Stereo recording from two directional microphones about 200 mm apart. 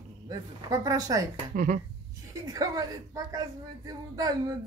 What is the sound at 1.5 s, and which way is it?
Dishes, 40° right (ahead or behind).